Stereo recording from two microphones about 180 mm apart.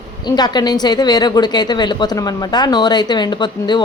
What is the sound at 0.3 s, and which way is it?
A woman's voice, 25° left (ahead or behind).